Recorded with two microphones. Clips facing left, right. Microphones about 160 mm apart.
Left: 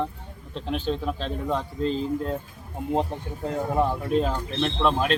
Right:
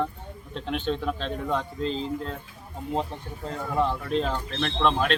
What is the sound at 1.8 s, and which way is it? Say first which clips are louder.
Speech: left 3 dB; 45° left (ahead or behind).